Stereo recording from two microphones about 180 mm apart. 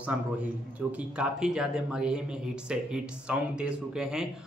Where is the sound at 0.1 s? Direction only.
10° right (ahead or behind).